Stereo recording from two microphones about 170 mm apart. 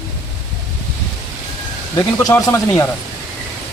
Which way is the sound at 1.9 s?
20° left (ahead or behind).